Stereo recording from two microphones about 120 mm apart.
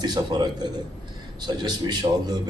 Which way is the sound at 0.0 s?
35° right (ahead or behind).